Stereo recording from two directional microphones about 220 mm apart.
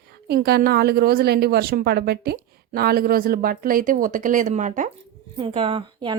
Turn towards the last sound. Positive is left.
turn(degrees=-20)  # may be behind; listen again after turning